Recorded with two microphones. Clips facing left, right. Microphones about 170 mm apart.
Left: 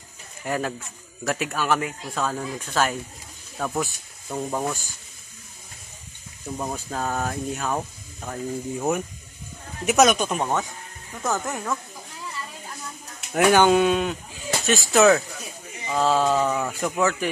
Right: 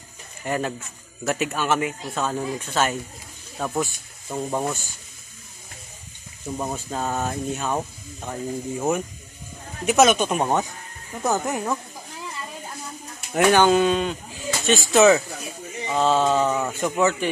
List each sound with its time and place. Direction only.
0.5 s speech: centre (ahead or behind)
6.6 s speech: 5° right (ahead or behind)
10.4 s a woman's voice: 20° right (ahead or behind)
13.4 s speech: 10° left (ahead or behind)